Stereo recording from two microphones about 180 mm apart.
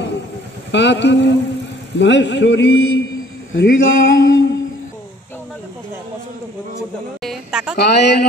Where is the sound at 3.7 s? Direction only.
90° left.